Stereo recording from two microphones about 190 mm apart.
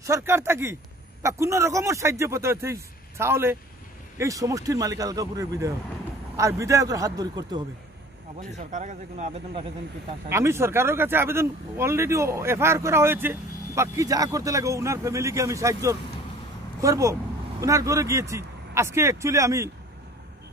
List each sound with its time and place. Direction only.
0.0 s speech: 15° right (ahead or behind)
8.4 s speech: 40° right (ahead or behind)
10.3 s speech: 15° right (ahead or behind)